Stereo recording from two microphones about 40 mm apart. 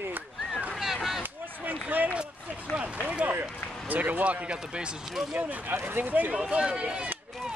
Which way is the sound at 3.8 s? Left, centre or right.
Right.